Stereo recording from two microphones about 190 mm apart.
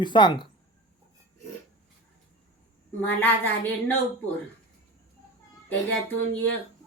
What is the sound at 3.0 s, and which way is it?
Speech, 10° left (ahead or behind).